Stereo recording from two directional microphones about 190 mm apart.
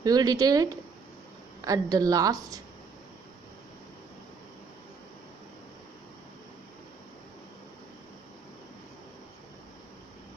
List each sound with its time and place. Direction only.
0.0 s a woman's voice: 20° right (ahead or behind)